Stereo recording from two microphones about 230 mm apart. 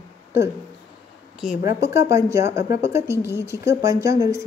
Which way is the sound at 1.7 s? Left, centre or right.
Centre.